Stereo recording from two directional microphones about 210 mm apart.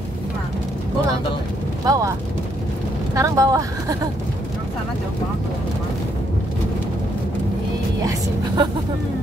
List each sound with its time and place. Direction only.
1.9 s speech: 15° right (ahead or behind)
3.2 s speech: 15° right (ahead or behind)
8.0 s music: 15° right (ahead or behind)